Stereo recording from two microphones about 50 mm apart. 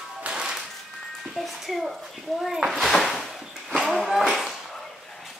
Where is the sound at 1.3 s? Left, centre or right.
Centre.